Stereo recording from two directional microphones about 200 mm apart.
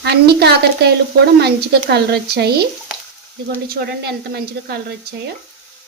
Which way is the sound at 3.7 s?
50° right (ahead or behind).